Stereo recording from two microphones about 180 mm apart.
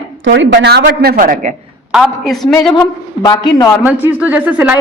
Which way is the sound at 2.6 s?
25° left (ahead or behind).